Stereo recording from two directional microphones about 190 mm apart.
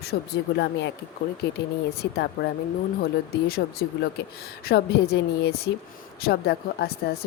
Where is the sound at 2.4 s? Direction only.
60° left (ahead or behind).